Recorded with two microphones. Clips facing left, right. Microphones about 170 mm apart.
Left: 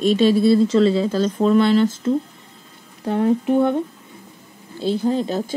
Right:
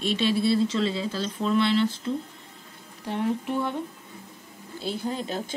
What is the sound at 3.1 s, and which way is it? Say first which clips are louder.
Speech: left 9 dB; 35° left (ahead or behind).